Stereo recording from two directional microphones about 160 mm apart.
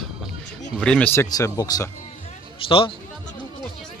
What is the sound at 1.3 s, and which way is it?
Speech, 25° left (ahead or behind).